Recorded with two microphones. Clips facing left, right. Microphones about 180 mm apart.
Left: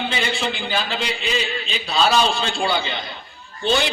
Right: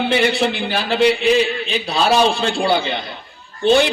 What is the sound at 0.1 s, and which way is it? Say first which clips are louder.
A man's voice: right 8 dB; 65° right (ahead or behind).